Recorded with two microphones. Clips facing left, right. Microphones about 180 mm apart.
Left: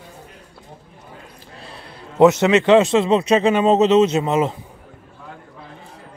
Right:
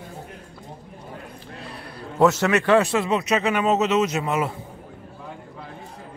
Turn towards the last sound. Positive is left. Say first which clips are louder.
# left 6 dB
turn(degrees=25)  # may be behind; listen again after turning